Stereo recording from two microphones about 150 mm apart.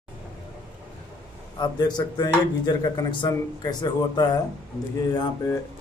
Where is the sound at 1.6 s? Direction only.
30° left (ahead or behind).